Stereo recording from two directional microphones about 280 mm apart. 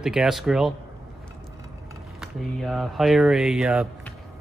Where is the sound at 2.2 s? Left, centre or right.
Centre.